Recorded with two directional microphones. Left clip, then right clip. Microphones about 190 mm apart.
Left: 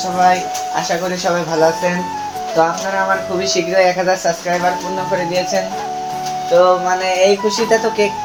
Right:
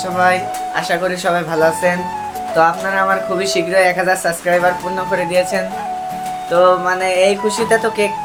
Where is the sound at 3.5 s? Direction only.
20° right (ahead or behind).